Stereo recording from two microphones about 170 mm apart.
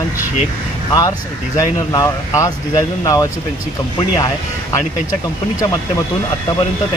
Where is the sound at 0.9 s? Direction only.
20° left (ahead or behind).